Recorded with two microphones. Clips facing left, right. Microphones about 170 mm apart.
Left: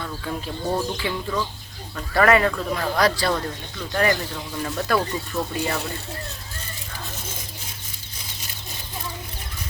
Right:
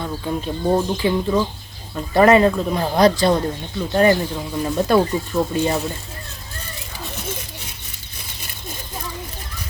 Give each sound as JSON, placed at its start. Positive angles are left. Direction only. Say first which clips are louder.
{"t": 0.0, "sound": "speech", "louder": "right 5 dB", "side_deg": -20}